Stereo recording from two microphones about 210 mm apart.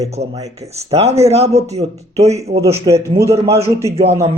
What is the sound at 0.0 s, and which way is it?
Speech, 30° right (ahead or behind).